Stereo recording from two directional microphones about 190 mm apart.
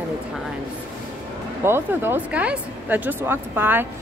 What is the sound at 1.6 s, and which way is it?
Speech, 10° right (ahead or behind).